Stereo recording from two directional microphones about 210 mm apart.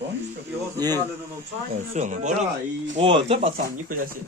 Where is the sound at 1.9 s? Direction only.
35° right (ahead or behind).